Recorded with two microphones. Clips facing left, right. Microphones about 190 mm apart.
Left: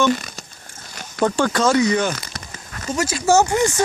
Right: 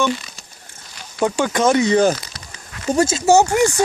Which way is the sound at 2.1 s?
50° left (ahead or behind).